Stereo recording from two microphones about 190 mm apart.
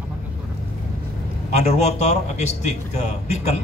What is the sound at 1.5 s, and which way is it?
A man's voice, 35° left (ahead or behind).